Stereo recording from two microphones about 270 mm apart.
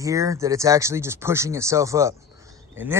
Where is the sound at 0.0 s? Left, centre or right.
Centre.